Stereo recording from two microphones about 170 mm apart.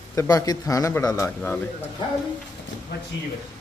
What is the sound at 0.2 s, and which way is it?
A man's voice, 20° left (ahead or behind).